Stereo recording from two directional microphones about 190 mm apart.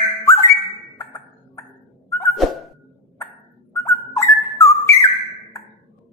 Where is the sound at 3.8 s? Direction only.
15° left (ahead or behind).